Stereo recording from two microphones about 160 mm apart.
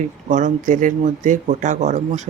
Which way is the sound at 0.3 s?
50° right (ahead or behind).